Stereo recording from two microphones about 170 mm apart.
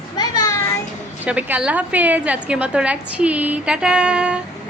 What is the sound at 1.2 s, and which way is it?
A woman's voice, 10° right (ahead or behind).